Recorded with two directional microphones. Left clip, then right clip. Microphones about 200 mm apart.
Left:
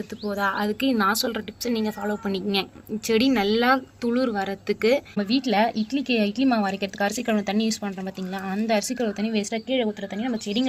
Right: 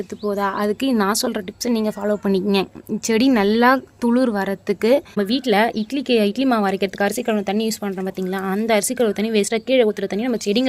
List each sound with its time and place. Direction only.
0.3 s a woman's voice: 40° right (ahead or behind)